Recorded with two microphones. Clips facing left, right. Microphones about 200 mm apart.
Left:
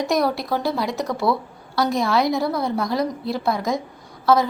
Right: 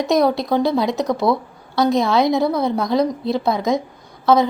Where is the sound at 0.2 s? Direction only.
20° right (ahead or behind).